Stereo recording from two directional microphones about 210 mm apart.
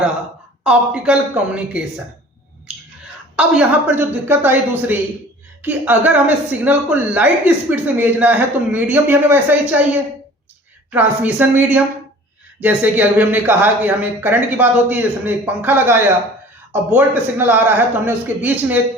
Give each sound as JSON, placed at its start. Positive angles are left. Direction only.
{"t": 0.6, "sound": "a woman's voice", "side_deg": -5}
{"t": 3.3, "sound": "a woman's voice", "side_deg": -5}